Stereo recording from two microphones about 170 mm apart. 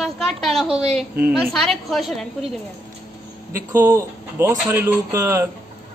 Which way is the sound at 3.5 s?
15° right (ahead or behind).